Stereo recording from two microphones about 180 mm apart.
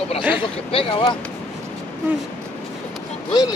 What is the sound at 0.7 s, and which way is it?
Speech, 30° left (ahead or behind).